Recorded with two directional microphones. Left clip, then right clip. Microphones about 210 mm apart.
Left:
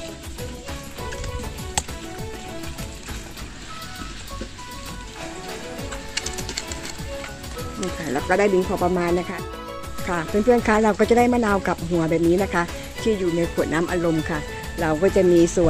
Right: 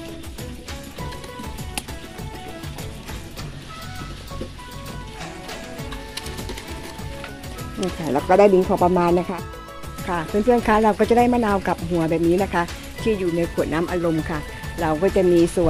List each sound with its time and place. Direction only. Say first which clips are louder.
7.8 s speech: right 3 dB; 15° right (ahead or behind)
10.0 s speech: even; centre (ahead or behind)